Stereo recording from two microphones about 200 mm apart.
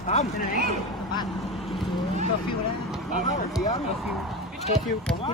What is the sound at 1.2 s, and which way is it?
Boat, centre (ahead or behind).